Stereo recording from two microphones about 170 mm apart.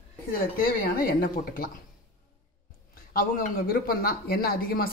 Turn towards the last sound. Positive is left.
turn(degrees=60)  # may be behind; listen again after turning